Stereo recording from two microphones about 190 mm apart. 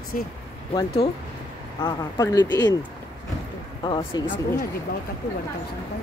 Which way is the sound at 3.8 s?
25° left (ahead or behind).